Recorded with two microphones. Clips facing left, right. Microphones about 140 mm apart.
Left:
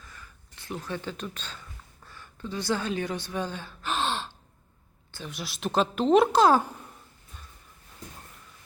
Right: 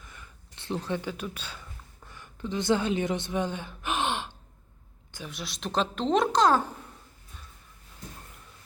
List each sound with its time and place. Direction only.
0.0 s a sound: 20° right (ahead or behind)
0.9 s speech: 10° right (ahead or behind)
2.0 s gasp: 15° right (ahead or behind)
5.3 s speech: centre (ahead or behind)